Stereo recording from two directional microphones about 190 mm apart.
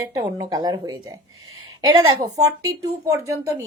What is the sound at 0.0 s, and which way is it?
A woman's voice, 15° right (ahead or behind).